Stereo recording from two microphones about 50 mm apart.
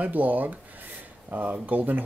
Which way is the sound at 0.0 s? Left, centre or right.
Right.